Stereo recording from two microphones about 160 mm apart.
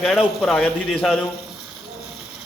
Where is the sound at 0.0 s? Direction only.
Centre (ahead or behind).